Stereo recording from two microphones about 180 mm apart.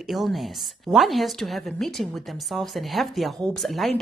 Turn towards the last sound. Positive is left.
turn(degrees=0)  # may be behind; listen again after turning